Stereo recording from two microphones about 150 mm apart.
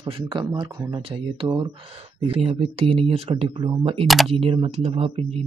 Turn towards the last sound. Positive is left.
turn(degrees=-40)  # may be behind; listen again after turning